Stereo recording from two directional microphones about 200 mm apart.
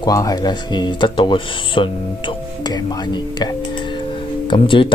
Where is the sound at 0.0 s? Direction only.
20° left (ahead or behind).